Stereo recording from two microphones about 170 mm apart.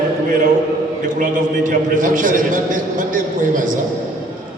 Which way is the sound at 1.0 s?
50° right (ahead or behind).